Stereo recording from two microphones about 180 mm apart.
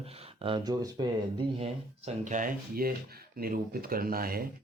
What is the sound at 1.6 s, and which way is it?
Speech, 40° right (ahead or behind).